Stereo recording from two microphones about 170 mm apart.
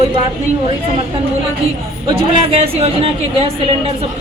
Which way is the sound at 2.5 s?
35° right (ahead or behind).